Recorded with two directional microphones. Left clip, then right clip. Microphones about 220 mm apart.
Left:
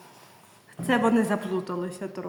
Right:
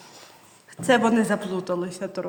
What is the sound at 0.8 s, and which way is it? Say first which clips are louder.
A woman's voice: right 4 dB; 40° right (ahead or behind).